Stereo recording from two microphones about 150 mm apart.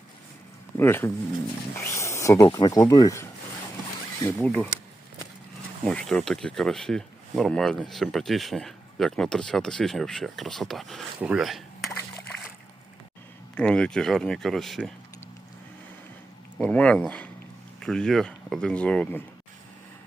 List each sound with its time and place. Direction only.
0.8 s speech: 15° left (ahead or behind)
4.3 s speech: 10° left (ahead or behind)
5.8 s speech: 5° left (ahead or behind)
13.6 s speech: 5° left (ahead or behind)
16.6 s speech: 10° left (ahead or behind)